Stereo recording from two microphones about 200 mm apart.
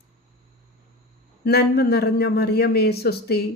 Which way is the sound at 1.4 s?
55° left (ahead or behind).